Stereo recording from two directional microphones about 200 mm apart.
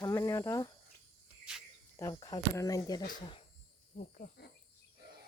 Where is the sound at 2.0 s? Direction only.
15° left (ahead or behind).